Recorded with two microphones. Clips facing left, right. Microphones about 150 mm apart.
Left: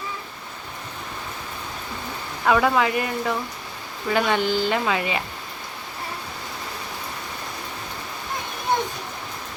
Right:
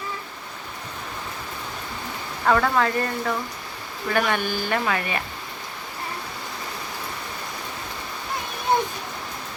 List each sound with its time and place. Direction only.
2.5 s speech: 10° left (ahead or behind)